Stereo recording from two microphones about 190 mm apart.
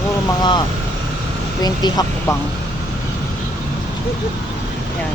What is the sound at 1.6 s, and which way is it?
Speech, 20° left (ahead or behind).